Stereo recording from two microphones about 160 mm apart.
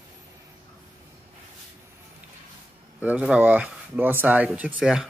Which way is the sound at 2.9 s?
10° right (ahead or behind).